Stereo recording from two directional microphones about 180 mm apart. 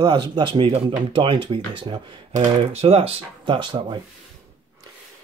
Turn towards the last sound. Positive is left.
turn(degrees=-30)  # may be behind; listen again after turning